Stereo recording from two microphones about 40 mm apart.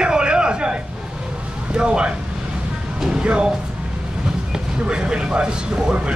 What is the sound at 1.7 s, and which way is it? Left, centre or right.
A man's voice, right.